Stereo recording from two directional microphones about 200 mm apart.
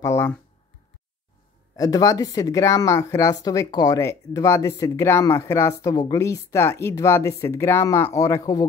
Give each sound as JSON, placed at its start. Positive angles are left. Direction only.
{"t": 0.0, "sound": "speech", "side_deg": 15}
{"t": 1.8, "sound": "speech", "side_deg": 15}